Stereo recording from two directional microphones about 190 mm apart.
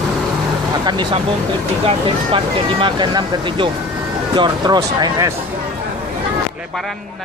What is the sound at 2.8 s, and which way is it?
Speech, 25° right (ahead or behind).